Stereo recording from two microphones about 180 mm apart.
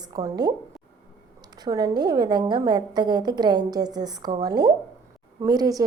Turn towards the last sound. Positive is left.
turn(degrees=-20)  # may be behind; listen again after turning